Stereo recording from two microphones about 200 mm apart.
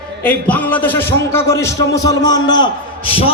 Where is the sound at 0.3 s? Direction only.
10° left (ahead or behind).